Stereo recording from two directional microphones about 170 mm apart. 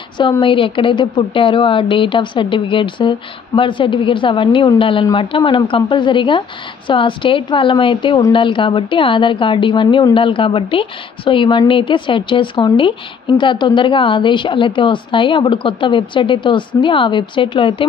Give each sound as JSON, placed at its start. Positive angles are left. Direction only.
{"t": 0.2, "sound": "a woman's voice", "side_deg": 30}